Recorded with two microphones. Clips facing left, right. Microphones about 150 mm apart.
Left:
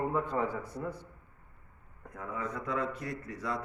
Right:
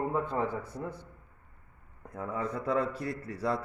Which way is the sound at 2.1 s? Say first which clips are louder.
Right 3 dB; 30° right (ahead or behind).